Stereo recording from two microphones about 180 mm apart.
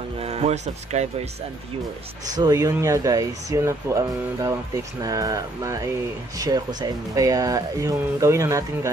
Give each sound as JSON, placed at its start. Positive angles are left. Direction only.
{"t": 0.2, "sound": "speech", "side_deg": -35}
{"t": 2.3, "sound": "speech", "side_deg": -20}